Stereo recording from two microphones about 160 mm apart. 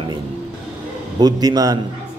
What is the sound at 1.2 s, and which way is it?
Speech, 25° right (ahead or behind).